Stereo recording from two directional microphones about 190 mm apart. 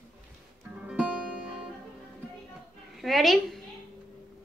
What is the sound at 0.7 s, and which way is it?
Music, 5° right (ahead or behind).